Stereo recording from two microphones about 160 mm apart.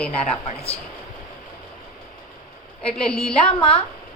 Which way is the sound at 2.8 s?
5° left (ahead or behind).